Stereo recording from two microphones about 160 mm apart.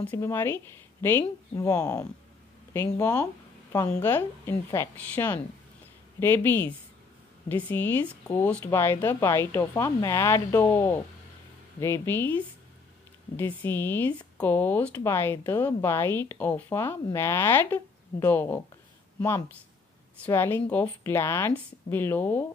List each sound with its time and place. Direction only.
0.0 s speech: 15° left (ahead or behind)
11.8 s speech: 15° left (ahead or behind)
20.2 s speech: 15° left (ahead or behind)